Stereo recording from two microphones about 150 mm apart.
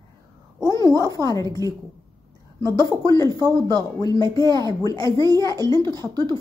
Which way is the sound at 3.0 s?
20° left (ahead or behind).